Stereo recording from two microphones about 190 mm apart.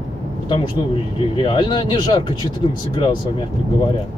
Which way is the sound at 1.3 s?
25° left (ahead or behind).